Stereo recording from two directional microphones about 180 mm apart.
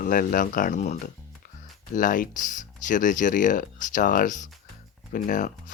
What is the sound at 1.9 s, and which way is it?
Speech, 50° left (ahead or behind).